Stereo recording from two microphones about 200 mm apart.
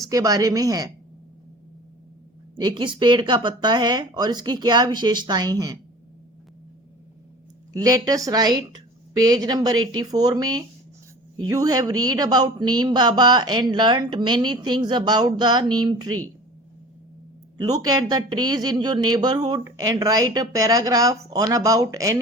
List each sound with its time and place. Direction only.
0.0 s speech: 15° right (ahead or behind)
2.6 s speech: 25° right (ahead or behind)
7.7 s speech: 20° right (ahead or behind)
17.8 s speech: 20° right (ahead or behind)